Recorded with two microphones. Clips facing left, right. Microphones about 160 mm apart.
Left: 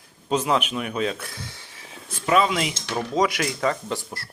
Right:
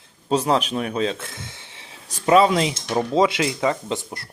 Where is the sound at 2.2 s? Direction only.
35° right (ahead or behind).